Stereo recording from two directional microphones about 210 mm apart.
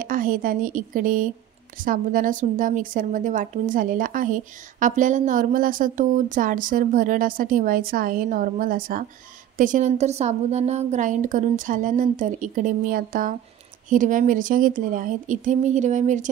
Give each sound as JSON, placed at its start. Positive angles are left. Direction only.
{"t": 0.0, "sound": "a woman's voice", "side_deg": -40}